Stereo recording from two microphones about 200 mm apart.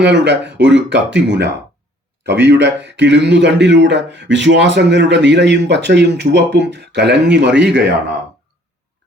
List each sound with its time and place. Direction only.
0.0 s a man's voice: 60° right (ahead or behind)